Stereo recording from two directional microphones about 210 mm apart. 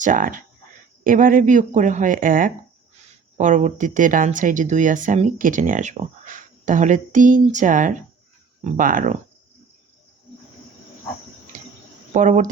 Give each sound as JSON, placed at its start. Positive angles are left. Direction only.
{"t": 0.0, "sound": "speech", "side_deg": -40}
{"t": 11.5, "sound": "cricket", "side_deg": -40}
{"t": 12.1, "sound": "speech", "side_deg": -35}